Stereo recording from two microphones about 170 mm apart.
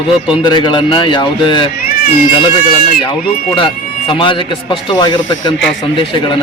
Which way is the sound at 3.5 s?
30° left (ahead or behind).